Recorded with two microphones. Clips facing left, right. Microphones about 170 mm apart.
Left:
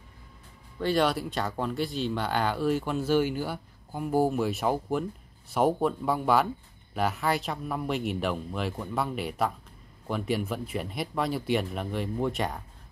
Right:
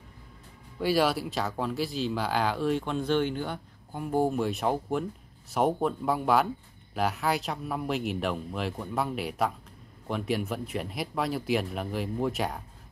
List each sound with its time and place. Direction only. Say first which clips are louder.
0.7 s speech: even; 5° right (ahead or behind)